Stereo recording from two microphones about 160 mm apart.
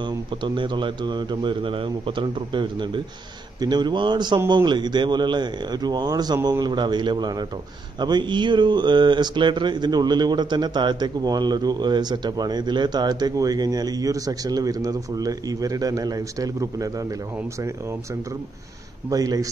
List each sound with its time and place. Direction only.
0.0 s speech: 30° right (ahead or behind)
19.0 s speech: 20° right (ahead or behind)